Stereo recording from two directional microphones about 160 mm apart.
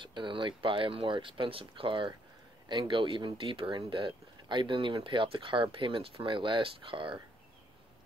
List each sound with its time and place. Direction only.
0.0 s speech: 30° right (ahead or behind)